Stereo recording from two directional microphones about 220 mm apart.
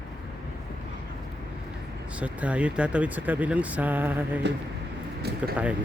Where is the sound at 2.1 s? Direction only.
5° right (ahead or behind).